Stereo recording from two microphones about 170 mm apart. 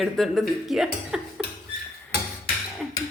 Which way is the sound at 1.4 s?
80° left.